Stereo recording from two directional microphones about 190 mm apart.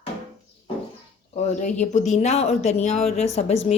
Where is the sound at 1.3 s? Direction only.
40° left (ahead or behind).